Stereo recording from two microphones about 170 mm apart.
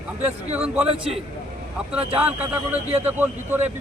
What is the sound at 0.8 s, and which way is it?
Speech, 35° right (ahead or behind).